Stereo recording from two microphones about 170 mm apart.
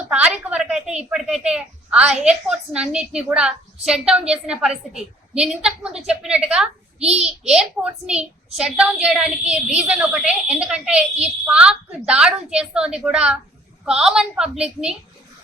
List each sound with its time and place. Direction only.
0.1 s speech: 5° right (ahead or behind)
7.0 s a child's voice: 40° right (ahead or behind)
7.3 s speech: 5° right (ahead or behind)